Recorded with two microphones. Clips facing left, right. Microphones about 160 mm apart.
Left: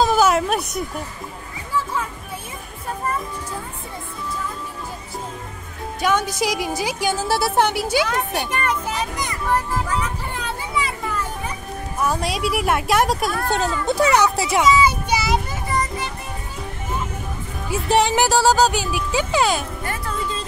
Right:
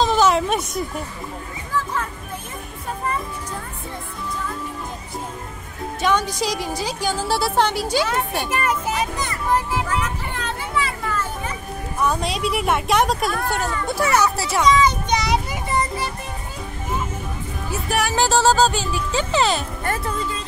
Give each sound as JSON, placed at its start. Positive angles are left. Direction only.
{"t": 0.0, "sound": "a sound", "side_deg": 5}
{"t": 6.4, "sound": "a woman's voice", "side_deg": 10}
{"t": 9.1, "sound": "speech", "side_deg": 15}
{"t": 9.5, "sound": "speech", "side_deg": -10}
{"t": 10.3, "sound": "children playing", "side_deg": 10}
{"t": 12.0, "sound": "a woman's voice", "side_deg": 5}
{"t": 13.8, "sound": "speech", "side_deg": 20}
{"t": 14.6, "sound": "children playing", "side_deg": 5}
{"t": 15.7, "sound": "music", "side_deg": -25}
{"t": 17.8, "sound": "music", "side_deg": 25}
{"t": 18.1, "sound": "speech", "side_deg": 15}